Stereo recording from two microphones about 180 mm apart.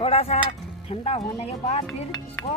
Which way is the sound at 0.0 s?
35° left (ahead or behind).